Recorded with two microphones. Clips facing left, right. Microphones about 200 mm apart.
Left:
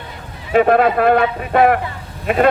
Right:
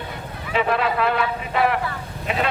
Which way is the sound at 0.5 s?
50° left (ahead or behind).